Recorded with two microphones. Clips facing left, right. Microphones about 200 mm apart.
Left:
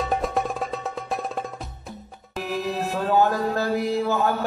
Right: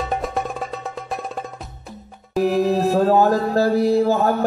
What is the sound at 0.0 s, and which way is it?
Music, centre (ahead or behind).